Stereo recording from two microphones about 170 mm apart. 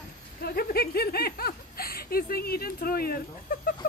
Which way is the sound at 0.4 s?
65° left (ahead or behind).